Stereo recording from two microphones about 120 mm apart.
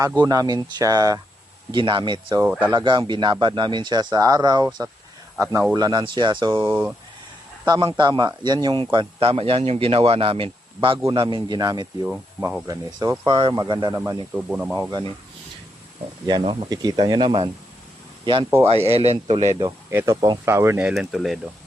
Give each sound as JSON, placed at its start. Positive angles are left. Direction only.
{"t": 0.2, "sound": "speech", "side_deg": -30}
{"t": 1.7, "sound": "speech", "side_deg": -40}
{"t": 2.4, "sound": "speech", "side_deg": -15}
{"t": 2.6, "sound": "speech", "side_deg": -40}
{"t": 6.5, "sound": "speech", "side_deg": -15}
{"t": 7.6, "sound": "a man's voice", "side_deg": -35}
{"t": 12.4, "sound": "speech", "side_deg": -10}
{"t": 12.6, "sound": "speech", "side_deg": -35}
{"t": 14.5, "sound": "speech", "side_deg": -10}
{"t": 14.8, "sound": "speech", "side_deg": -35}
{"t": 16.4, "sound": "speech", "side_deg": -40}
{"t": 18.9, "sound": "a man's voice", "side_deg": -60}
{"t": 19.9, "sound": "speech", "side_deg": -20}
{"t": 20.8, "sound": "speech", "side_deg": -5}